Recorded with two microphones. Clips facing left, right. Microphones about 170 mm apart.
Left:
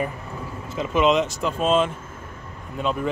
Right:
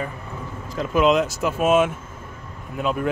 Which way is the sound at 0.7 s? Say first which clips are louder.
Right 1 dB; centre (ahead or behind).